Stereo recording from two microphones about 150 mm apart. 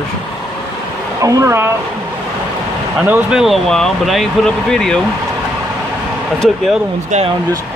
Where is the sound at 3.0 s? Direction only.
10° right (ahead or behind).